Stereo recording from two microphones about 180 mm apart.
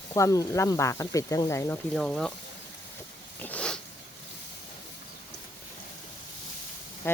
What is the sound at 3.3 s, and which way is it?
Snort, 10° left (ahead or behind).